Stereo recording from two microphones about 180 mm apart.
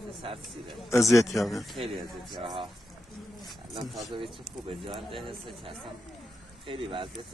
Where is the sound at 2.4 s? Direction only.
30° right (ahead or behind).